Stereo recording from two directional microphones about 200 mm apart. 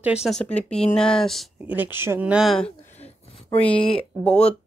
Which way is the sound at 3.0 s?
30° left (ahead or behind).